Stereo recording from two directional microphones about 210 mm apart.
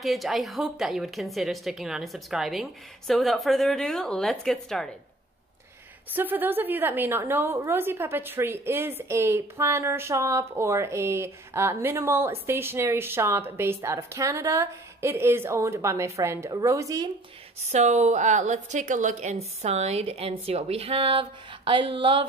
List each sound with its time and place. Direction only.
0.0 s a woman's voice: centre (ahead or behind)
6.1 s speech: 10° right (ahead or behind)
17.6 s a woman's voice: 30° right (ahead or behind)